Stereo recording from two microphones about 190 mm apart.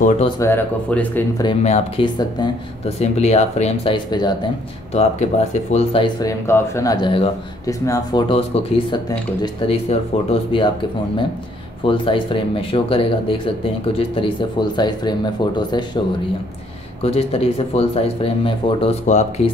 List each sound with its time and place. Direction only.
0.4 s speech: 10° left (ahead or behind)
1.4 s speech: 30° left (ahead or behind)
4.9 s speech: 35° left (ahead or behind)
7.6 s speech: 15° left (ahead or behind)
8.3 s speech: 30° left (ahead or behind)
11.8 s speech: 25° left (ahead or behind)
17.0 s speech: 30° left (ahead or behind)